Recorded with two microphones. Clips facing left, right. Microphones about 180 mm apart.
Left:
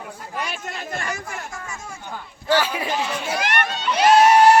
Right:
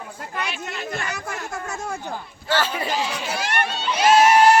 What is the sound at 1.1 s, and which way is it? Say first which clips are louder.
Speech: right 1 dB; 65° right (ahead or behind).